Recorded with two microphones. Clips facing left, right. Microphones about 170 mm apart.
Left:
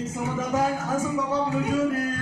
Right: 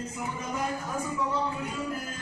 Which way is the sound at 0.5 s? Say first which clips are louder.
Left 8 dB; 85° left.